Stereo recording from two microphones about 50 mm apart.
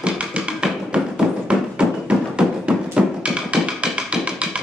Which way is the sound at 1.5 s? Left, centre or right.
Centre.